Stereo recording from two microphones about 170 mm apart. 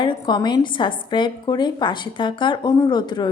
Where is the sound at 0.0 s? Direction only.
25° left (ahead or behind).